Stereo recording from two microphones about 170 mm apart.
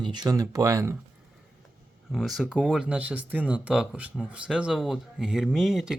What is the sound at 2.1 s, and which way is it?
Speech, centre (ahead or behind).